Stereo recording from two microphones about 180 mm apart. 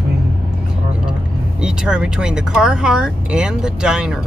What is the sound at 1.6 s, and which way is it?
Speech, 5° right (ahead or behind).